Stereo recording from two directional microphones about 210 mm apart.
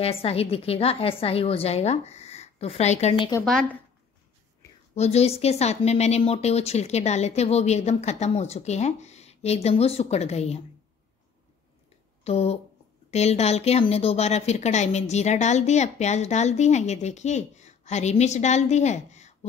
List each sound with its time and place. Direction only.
0.0 s a woman's voice: 30° left (ahead or behind)
3.4 s a woman's voice: centre (ahead or behind)
4.9 s a woman's voice: 30° left (ahead or behind)
12.3 s a woman's voice: 30° left (ahead or behind)